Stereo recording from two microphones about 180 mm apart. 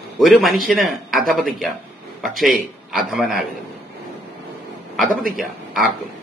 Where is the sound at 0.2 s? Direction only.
Centre (ahead or behind).